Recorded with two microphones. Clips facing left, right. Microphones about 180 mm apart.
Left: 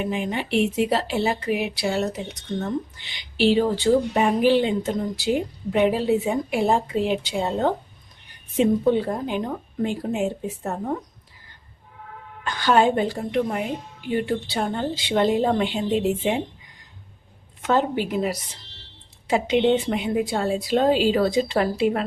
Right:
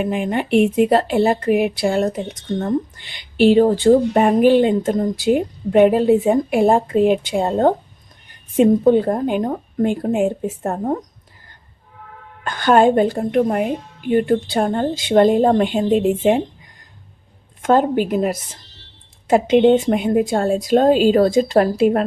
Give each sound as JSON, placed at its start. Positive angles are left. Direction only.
{"t": 0.0, "sound": "a woman's voice", "side_deg": -50}
{"t": 12.5, "sound": "a woman's voice", "side_deg": -50}
{"t": 17.6, "sound": "a woman's voice", "side_deg": -50}